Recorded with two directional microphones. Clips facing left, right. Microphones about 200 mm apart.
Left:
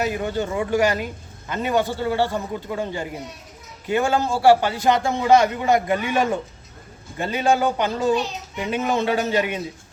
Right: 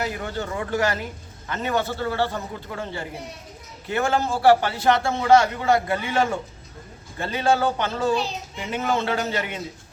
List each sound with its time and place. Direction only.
0.0 s speech: 20° left (ahead or behind)